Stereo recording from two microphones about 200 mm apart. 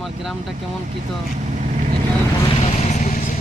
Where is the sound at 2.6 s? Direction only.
35° left (ahead or behind).